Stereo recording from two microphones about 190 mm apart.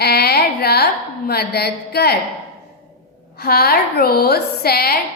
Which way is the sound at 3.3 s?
55° left (ahead or behind).